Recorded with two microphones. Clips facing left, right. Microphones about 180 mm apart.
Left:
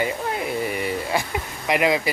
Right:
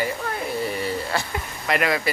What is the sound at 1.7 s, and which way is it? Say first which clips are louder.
Speech: left 3 dB; 15° left (ahead or behind).